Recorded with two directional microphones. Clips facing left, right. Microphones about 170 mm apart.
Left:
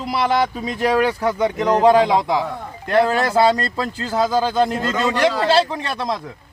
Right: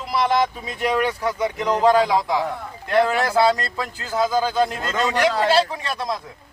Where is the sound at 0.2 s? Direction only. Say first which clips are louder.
Left 1 dB; 30° left (ahead or behind).